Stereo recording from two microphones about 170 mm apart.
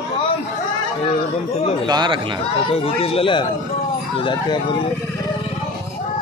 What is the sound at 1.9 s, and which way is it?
Speech, 25° right (ahead or behind).